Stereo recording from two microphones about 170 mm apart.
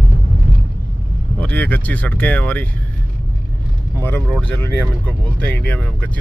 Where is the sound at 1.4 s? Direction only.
10° left (ahead or behind).